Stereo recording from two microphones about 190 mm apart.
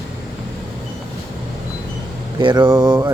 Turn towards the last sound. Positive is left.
turn(degrees=-20)  # may be behind; listen again after turning